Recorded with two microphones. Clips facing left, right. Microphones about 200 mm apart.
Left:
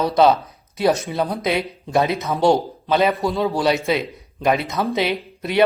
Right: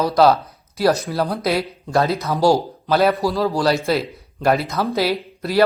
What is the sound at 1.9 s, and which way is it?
Speech, 20° left (ahead or behind).